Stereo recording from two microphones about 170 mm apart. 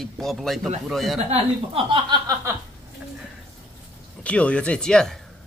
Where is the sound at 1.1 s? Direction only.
40° right (ahead or behind).